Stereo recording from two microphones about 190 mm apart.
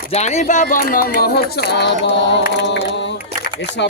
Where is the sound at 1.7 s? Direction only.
65° left (ahead or behind).